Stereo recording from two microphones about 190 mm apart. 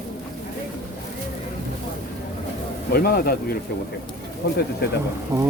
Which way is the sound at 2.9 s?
55° left (ahead or behind).